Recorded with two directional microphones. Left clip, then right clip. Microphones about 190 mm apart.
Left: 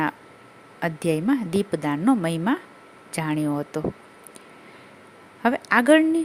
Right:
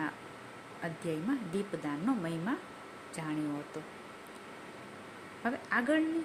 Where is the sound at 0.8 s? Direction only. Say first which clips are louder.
Left 13 dB; 55° left (ahead or behind).